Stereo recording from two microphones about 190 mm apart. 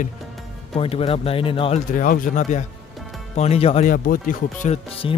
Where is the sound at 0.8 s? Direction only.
30° left (ahead or behind).